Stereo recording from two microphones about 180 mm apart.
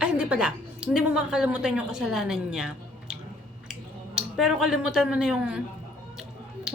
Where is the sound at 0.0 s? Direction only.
5° right (ahead or behind).